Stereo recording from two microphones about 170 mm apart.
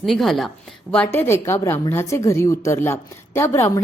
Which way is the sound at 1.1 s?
15° left (ahead or behind).